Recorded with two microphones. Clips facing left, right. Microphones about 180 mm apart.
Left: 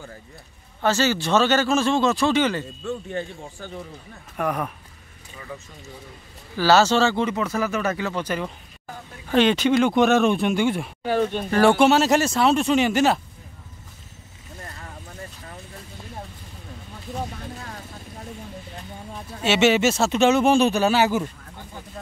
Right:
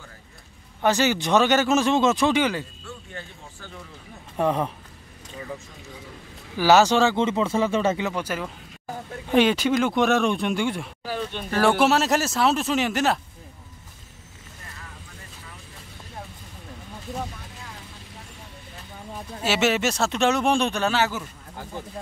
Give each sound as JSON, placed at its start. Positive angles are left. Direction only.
{"t": 0.8, "sound": "speech", "side_deg": -15}
{"t": 4.4, "sound": "speech", "side_deg": -25}
{"t": 6.5, "sound": "speech", "side_deg": -15}
{"t": 8.1, "sound": "speech", "side_deg": -10}
{"t": 11.1, "sound": "speech", "side_deg": 60}
{"t": 11.5, "sound": "speech", "side_deg": 0}
{"t": 19.1, "sound": "speech", "side_deg": 0}